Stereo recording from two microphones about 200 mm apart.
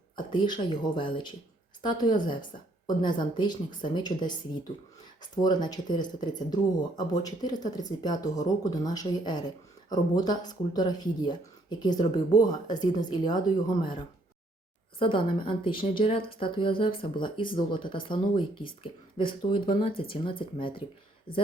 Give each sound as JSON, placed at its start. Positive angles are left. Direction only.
{"t": 0.2, "sound": "speech", "side_deg": 25}
{"t": 14.9, "sound": "speech", "side_deg": 25}